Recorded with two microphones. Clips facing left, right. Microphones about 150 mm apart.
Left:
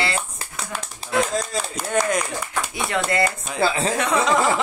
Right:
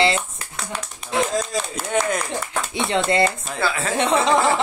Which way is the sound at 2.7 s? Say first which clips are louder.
Right 4 dB; 25° right (ahead or behind).